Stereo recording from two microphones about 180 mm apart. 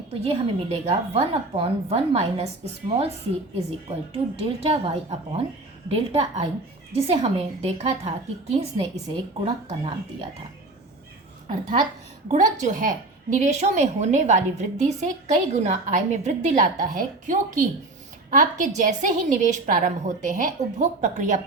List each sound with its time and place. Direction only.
0.1 s a woman's voice: 30° right (ahead or behind)
3.5 s a woman's voice: 35° right (ahead or behind)
12.3 s a woman's voice: 45° right (ahead or behind)